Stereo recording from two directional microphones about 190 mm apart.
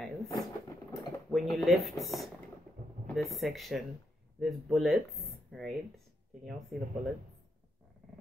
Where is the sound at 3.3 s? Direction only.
Centre (ahead or behind).